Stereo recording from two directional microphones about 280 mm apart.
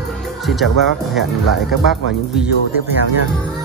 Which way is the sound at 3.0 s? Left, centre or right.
Right.